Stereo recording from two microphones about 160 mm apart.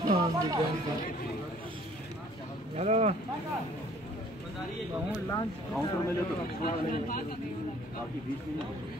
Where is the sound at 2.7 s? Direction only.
40° right (ahead or behind).